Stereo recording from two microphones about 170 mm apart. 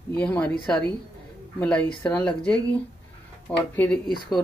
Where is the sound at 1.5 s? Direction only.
10° left (ahead or behind).